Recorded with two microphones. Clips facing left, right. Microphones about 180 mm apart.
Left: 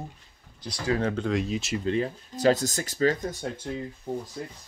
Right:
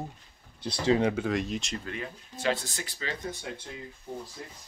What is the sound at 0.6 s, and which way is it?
Speech, 25° right (ahead or behind).